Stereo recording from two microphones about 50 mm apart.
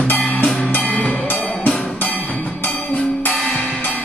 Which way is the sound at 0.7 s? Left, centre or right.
Left.